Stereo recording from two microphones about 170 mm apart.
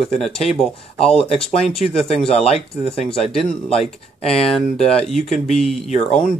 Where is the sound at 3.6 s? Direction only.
35° left (ahead or behind).